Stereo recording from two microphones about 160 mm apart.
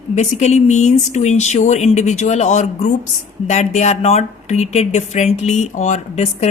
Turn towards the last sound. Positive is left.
turn(degrees=45)  # may be behind; listen again after turning